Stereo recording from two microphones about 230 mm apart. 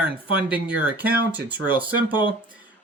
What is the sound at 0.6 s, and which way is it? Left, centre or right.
Speech, centre.